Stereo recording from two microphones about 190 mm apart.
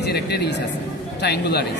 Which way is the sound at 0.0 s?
60° left (ahead or behind).